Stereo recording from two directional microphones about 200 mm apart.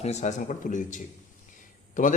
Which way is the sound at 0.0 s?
35° left (ahead or behind).